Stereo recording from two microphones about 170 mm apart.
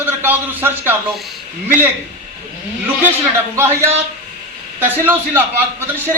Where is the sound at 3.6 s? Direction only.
15° right (ahead or behind).